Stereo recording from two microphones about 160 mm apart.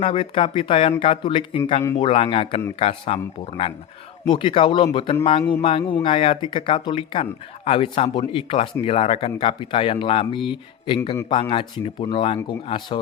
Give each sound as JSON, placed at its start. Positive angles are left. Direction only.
{"t": 0.0, "sound": "speech", "side_deg": 35}
{"t": 4.3, "sound": "speech", "side_deg": 35}